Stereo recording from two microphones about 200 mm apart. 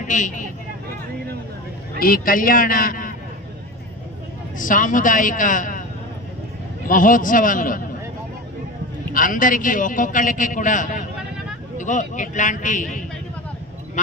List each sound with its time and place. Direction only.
0.1 s a man's voice: 40° left (ahead or behind)
2.0 s a man's voice: 45° left (ahead or behind)
4.5 s a man's voice: 40° left (ahead or behind)
6.8 s a man's voice: 40° left (ahead or behind)
9.1 s a man's voice: 40° left (ahead or behind)